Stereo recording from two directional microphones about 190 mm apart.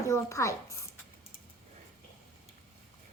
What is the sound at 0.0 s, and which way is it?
Speech, 15° left (ahead or behind).